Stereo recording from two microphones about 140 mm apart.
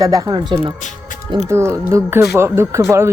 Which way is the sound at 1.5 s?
20° right (ahead or behind).